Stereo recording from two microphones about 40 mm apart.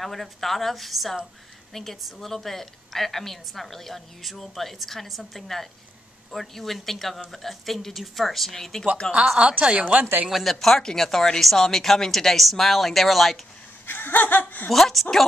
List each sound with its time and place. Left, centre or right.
0.0 s a woman's voice: centre
9.0 s speech: centre
9.4 s a woman's voice: right
10.3 s a woman's voice: centre
13.8 s speech: left
14.7 s a woman's voice: centre